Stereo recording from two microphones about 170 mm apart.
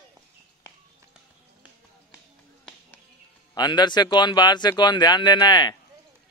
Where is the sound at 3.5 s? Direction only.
25° left (ahead or behind).